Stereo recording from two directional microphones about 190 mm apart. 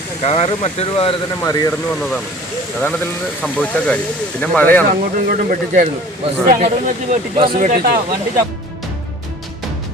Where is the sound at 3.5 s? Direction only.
5° left (ahead or behind).